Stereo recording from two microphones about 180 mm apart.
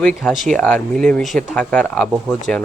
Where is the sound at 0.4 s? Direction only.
5° left (ahead or behind).